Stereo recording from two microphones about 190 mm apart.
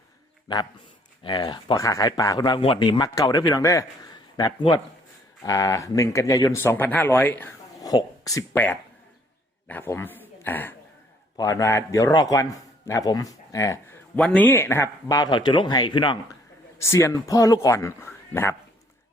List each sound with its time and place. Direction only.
0.4 s speech: 25° left (ahead or behind)